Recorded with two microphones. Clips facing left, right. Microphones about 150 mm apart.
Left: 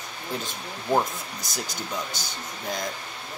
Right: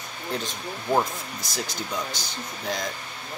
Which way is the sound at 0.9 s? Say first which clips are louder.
Even; centre (ahead or behind).